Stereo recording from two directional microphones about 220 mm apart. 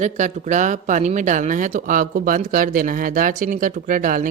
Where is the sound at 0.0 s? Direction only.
35° right (ahead or behind).